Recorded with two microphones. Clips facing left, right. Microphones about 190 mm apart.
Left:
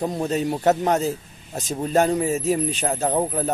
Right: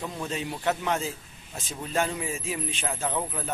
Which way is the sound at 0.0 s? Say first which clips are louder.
Left 9 dB; 40° left (ahead or behind).